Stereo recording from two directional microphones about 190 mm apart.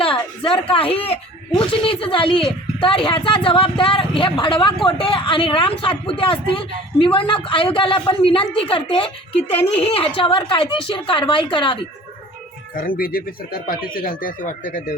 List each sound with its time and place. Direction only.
0.0 s a sound: 30° left (ahead or behind)
0.7 s speech: 30° left (ahead or behind)
12.7 s speech: 50° left (ahead or behind)